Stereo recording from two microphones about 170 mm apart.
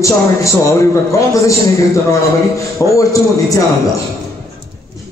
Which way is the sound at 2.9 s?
20° left (ahead or behind).